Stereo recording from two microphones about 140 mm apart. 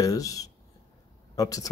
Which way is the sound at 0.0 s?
25° left (ahead or behind).